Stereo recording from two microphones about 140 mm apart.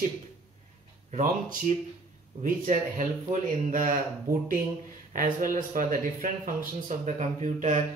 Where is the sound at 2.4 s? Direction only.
65° right (ahead or behind).